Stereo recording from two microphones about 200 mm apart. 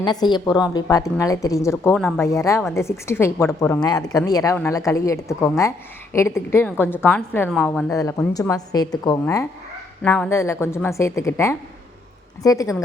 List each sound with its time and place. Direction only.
0.0 s a woman's voice: 20° left (ahead or behind); by 7.9 s 5° left (ahead or behind)
7.9 s speech: 15° left (ahead or behind)